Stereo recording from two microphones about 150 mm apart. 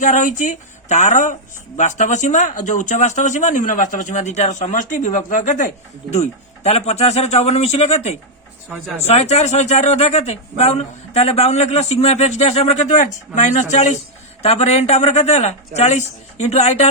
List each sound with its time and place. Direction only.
0.0 s speech: 55° left (ahead or behind)